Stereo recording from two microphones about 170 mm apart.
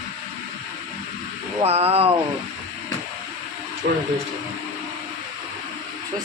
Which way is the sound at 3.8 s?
90° right.